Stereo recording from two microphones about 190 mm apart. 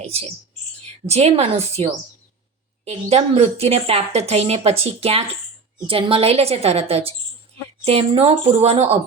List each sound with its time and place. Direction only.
0.0 s a woman's voice: 30° right (ahead or behind)